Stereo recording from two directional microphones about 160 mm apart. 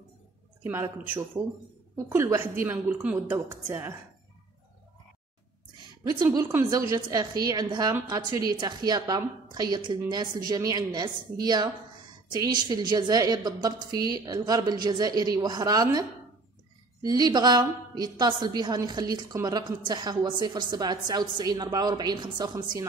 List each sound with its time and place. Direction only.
0.7 s a woman's voice: 15° right (ahead or behind)
2.0 s a woman's voice: 20° right (ahead or behind)
6.0 s a woman's voice: 25° right (ahead or behind)